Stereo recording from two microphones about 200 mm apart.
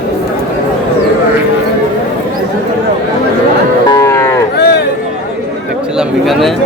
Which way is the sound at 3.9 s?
15° left (ahead or behind).